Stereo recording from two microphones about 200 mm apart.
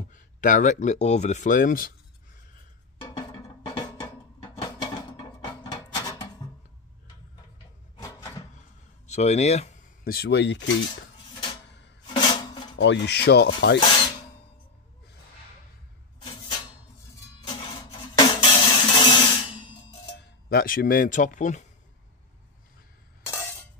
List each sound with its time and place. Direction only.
0.1 s speech: 40° left (ahead or behind)
3.1 s music: 25° left (ahead or behind)
5.1 s a sound: 20° left (ahead or behind)
8.0 s wood: 15° left (ahead or behind)
9.0 s speech: 35° left (ahead or behind)
10.0 s speech: 50° left (ahead or behind)
12.1 s music: 20° left (ahead or behind)
12.7 s speech: 60° left (ahead or behind)
16.2 s a sound: 20° left (ahead or behind)
17.5 s music: 25° left (ahead or behind)
20.4 s speech: 45° left (ahead or behind)
23.2 s a sound: 10° left (ahead or behind)